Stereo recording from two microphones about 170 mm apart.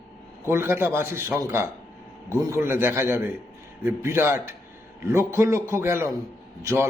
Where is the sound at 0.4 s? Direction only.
15° right (ahead or behind).